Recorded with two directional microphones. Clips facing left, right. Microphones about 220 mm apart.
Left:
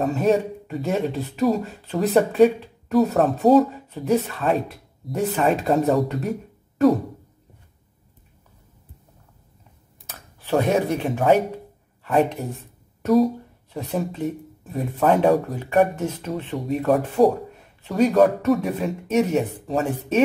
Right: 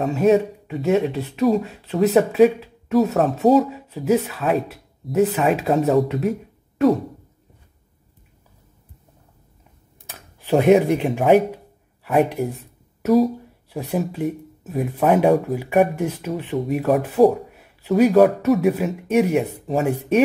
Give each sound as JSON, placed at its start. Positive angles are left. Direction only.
{"t": 0.0, "sound": "speech", "side_deg": 0}
{"t": 10.0, "sound": "speech", "side_deg": -15}
{"t": 13.0, "sound": "speech", "side_deg": 0}